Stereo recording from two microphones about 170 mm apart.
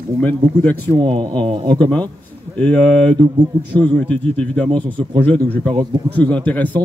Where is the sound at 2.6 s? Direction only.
5° left (ahead or behind).